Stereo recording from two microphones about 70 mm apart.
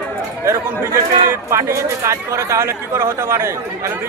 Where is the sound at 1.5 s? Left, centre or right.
Right.